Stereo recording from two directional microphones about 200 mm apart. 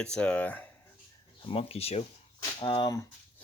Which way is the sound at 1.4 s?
30° left (ahead or behind).